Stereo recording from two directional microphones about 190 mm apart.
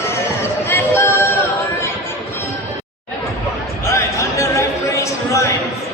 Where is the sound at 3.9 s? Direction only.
15° left (ahead or behind).